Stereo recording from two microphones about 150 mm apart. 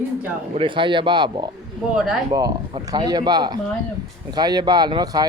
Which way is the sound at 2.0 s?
5° right (ahead or behind).